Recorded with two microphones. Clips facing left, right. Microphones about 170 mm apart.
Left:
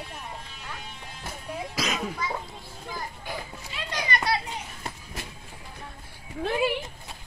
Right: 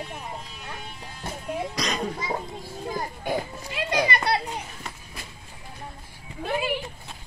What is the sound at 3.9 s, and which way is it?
Children playing, 60° right (ahead or behind).